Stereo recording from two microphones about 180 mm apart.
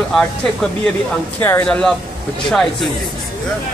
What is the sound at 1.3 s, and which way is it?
A man's voice, 10° left (ahead or behind).